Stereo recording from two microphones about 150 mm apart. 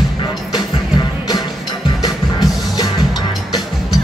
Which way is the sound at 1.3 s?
30° left (ahead or behind).